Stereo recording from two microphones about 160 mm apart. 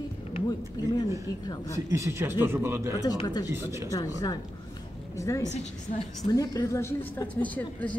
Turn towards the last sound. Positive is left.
turn(degrees=10)  # may be behind; listen again after turning